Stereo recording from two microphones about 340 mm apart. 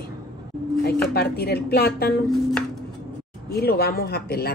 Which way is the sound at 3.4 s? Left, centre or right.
Left.